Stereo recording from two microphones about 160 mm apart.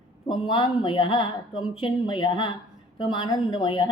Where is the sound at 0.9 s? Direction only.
30° left (ahead or behind).